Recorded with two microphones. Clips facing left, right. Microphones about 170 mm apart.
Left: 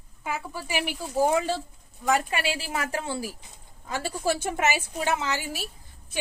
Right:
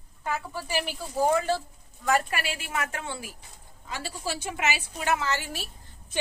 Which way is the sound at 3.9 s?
50° left (ahead or behind).